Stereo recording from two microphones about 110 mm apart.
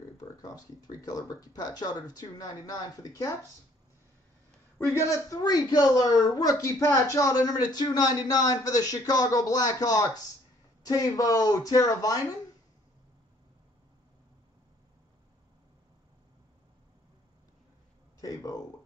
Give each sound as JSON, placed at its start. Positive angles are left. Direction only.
{"t": 0.2, "sound": "a woman's voice", "side_deg": 35}
{"t": 4.7, "sound": "a woman's voice", "side_deg": 25}
{"t": 18.2, "sound": "a sound", "side_deg": 35}